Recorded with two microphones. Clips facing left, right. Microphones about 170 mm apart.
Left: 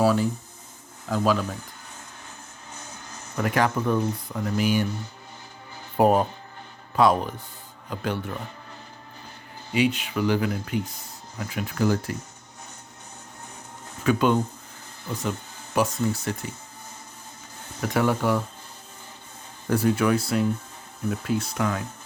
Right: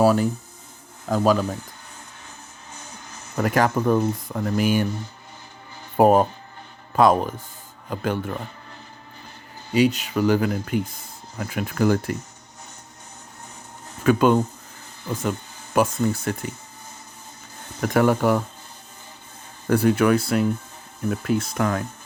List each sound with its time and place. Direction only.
0.0 s speech: 45° right (ahead or behind)
3.3 s speech: 40° right (ahead or behind)
6.0 s speech: 45° right (ahead or behind)
9.7 s speech: 40° right (ahead or behind); by 12.1 s 55° right (ahead or behind)
14.0 s speech: 50° right (ahead or behind)
15.7 s speech: 50° right (ahead or behind)
17.7 s speech: 50° right (ahead or behind)
19.6 s speech: 65° right (ahead or behind)